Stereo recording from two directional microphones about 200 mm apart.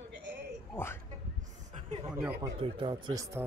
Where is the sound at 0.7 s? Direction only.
10° left (ahead or behind).